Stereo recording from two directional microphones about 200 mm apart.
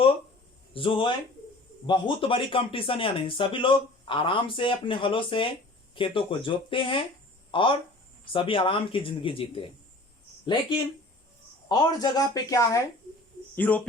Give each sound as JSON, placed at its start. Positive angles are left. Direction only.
{"t": 0.7, "sound": "speech", "side_deg": 25}